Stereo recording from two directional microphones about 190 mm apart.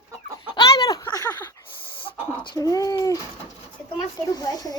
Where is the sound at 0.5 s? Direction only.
20° left (ahead or behind).